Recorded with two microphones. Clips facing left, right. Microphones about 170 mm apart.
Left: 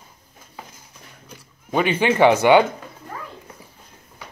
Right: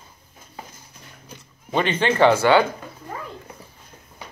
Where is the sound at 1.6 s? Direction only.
10° left (ahead or behind).